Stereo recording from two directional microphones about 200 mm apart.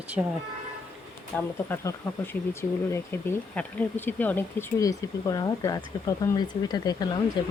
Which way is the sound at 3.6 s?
10° left (ahead or behind).